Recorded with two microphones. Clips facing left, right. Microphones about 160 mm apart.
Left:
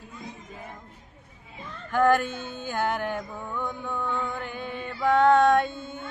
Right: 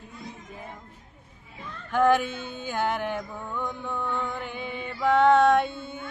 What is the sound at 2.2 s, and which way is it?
Speech, 45° left (ahead or behind).